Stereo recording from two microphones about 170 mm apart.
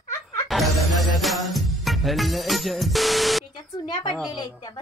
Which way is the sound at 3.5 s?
25° left (ahead or behind).